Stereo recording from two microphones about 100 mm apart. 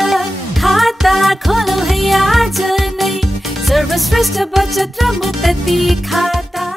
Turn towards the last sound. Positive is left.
turn(degrees=0)  # may be behind; listen again after turning